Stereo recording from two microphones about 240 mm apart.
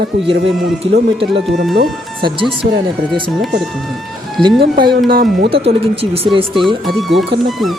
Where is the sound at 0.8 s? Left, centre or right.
Right.